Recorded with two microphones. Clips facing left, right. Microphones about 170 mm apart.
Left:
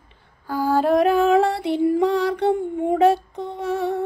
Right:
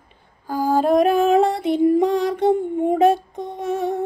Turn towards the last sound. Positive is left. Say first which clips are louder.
# right 1 dB
turn(degrees=-20)  # may be behind; listen again after turning